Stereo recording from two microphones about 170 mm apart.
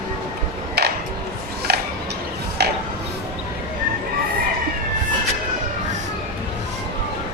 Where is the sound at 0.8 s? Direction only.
70° right (ahead or behind).